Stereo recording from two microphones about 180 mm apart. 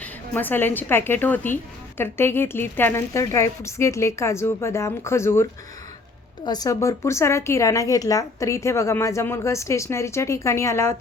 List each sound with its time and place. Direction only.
0.0 s a woman's voice: 10° left (ahead or behind)